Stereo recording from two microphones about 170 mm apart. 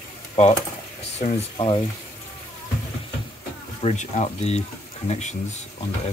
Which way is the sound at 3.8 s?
40° left (ahead or behind).